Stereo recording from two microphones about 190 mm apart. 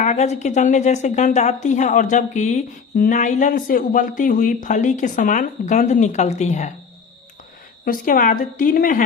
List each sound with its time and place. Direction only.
0.0 s a woman's voice: 35° left (ahead or behind)
7.9 s a woman's voice: 45° left (ahead or behind)